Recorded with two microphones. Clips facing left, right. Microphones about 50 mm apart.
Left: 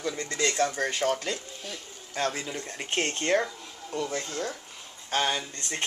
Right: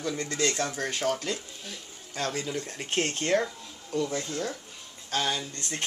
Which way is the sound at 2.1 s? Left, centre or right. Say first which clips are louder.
Left 1 dB; centre.